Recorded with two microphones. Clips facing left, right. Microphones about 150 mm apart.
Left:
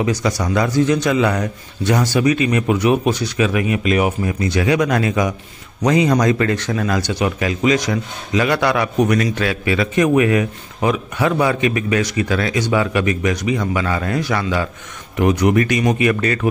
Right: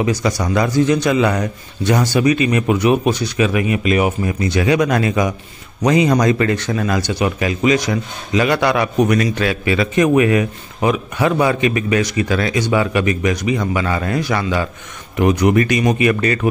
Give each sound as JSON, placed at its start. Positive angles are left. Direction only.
{"t": 0.0, "sound": "a man's voice", "side_deg": -15}
{"t": 4.4, "sound": "a man's voice", "side_deg": -20}
{"t": 8.3, "sound": "a man's voice", "side_deg": -20}